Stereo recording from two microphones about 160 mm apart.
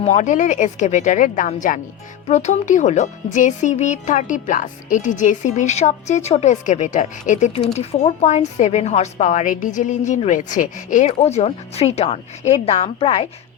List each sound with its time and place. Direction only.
0.0 s speech: 45° left (ahead or behind)